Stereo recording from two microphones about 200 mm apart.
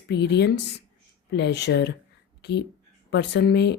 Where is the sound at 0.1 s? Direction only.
60° left (ahead or behind).